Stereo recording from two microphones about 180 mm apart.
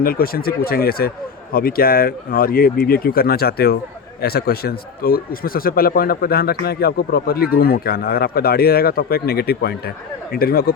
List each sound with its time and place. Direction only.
0.0 s speech: 55° left (ahead or behind)